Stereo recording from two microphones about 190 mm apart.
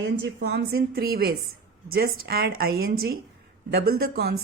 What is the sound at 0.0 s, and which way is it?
A woman's voice, 65° right (ahead or behind).